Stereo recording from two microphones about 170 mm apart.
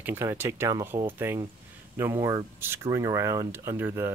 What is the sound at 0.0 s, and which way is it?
Speech, 15° right (ahead or behind).